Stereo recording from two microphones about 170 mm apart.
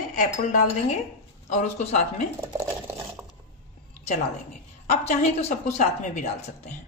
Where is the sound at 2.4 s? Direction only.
15° right (ahead or behind).